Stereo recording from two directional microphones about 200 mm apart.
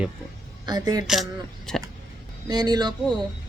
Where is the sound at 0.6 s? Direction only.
20° right (ahead or behind).